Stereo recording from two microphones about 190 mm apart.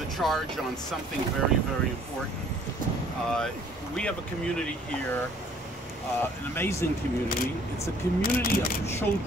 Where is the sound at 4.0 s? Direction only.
5° left (ahead or behind).